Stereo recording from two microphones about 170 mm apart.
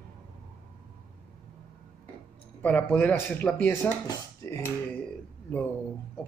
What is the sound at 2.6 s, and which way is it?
Speech, 10° left (ahead or behind).